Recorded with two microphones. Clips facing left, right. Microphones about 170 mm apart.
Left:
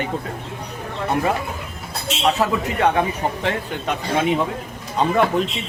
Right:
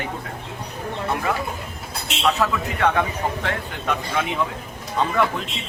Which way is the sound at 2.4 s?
30° left (ahead or behind).